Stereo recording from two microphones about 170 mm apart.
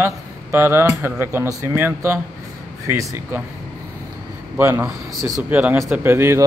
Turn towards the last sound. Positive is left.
turn(degrees=-15)  # may be behind; listen again after turning